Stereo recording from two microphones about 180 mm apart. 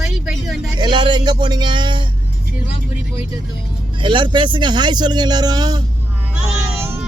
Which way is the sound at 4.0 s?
25° right (ahead or behind).